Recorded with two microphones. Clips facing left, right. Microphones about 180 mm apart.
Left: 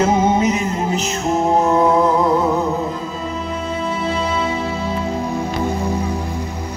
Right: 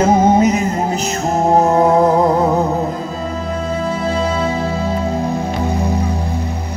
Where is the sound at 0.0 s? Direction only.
40° right (ahead or behind).